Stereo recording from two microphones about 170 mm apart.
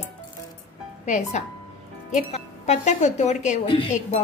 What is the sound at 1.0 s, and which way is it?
A woman's voice, 45° left (ahead or behind).